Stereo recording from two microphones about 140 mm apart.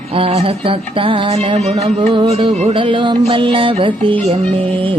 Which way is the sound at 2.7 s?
35° right (ahead or behind).